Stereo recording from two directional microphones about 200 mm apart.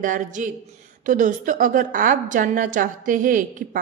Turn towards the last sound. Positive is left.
turn(degrees=-40)  # may be behind; listen again after turning